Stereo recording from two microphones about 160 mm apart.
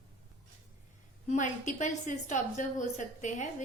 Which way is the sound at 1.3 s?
50° left (ahead or behind).